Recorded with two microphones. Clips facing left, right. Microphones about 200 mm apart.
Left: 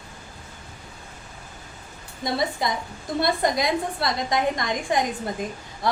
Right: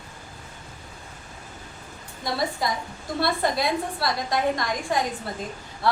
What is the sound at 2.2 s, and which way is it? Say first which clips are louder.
A woman's voice: left 1 dB; 20° left (ahead or behind).